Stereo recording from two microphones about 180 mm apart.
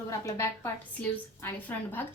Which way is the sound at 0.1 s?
15° left (ahead or behind).